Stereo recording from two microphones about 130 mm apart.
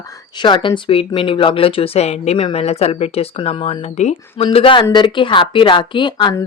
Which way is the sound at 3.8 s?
55° left (ahead or behind).